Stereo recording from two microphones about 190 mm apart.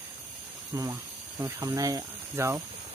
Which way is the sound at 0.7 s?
15° right (ahead or behind).